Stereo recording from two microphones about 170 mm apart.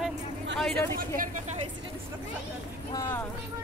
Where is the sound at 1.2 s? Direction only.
50° right (ahead or behind).